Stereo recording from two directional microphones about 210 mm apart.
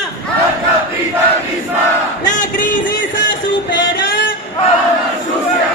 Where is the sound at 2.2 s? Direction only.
40° left (ahead or behind).